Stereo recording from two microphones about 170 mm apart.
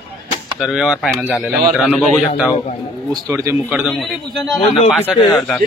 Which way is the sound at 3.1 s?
15° right (ahead or behind).